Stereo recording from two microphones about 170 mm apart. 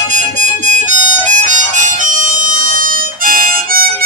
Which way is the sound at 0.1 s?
45° right (ahead or behind).